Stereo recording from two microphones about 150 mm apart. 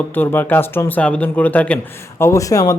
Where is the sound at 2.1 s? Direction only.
20° left (ahead or behind).